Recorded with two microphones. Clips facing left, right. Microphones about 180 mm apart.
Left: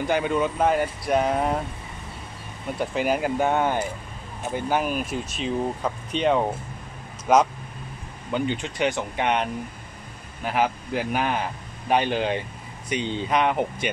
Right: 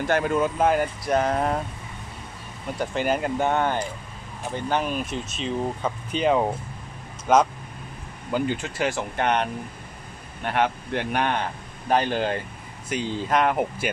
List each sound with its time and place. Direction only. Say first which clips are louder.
0.0 s speech: right 1 dB; centre (ahead or behind)
2.8 s speech: left 1 dB; 5° left (ahead or behind)